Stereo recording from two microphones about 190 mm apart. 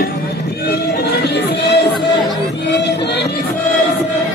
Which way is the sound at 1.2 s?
60° left (ahead or behind).